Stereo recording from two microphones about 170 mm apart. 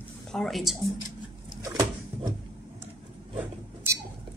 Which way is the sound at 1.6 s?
20° right (ahead or behind).